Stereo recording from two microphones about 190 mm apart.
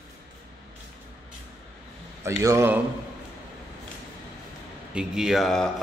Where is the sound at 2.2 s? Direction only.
15° right (ahead or behind).